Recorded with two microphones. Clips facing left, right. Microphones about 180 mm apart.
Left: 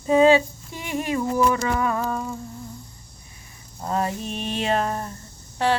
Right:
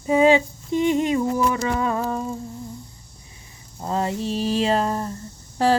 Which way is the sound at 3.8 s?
25° right (ahead or behind).